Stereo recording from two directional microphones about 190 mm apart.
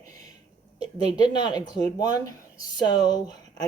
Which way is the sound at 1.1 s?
20° left (ahead or behind).